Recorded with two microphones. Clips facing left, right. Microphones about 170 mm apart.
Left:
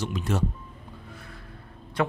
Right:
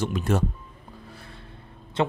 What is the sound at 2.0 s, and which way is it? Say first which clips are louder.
Speech: right 2 dB; 25° right (ahead or behind).